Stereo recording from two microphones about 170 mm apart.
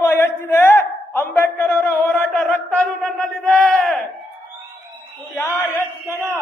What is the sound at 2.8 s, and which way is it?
Battle cry, centre (ahead or behind).